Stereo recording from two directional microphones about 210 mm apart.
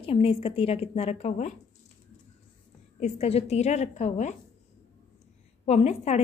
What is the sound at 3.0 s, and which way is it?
A woman's voice, 30° left (ahead or behind).